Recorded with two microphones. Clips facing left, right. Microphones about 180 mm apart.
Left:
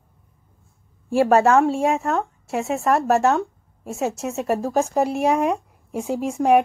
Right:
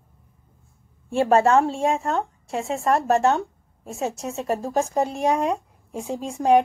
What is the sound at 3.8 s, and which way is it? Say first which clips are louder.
A woman's voice: left 3 dB; centre (ahead or behind).